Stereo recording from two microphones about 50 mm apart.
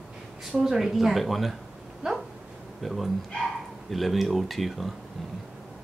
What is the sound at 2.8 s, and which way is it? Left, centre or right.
Speech, centre.